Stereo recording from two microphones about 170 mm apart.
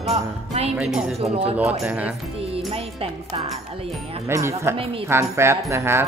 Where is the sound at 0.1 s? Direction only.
40° right (ahead or behind).